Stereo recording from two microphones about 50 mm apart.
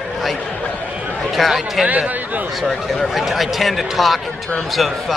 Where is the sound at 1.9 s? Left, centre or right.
Right.